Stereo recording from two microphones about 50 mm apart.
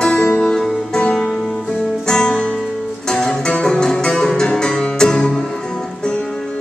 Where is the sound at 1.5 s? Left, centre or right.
Centre.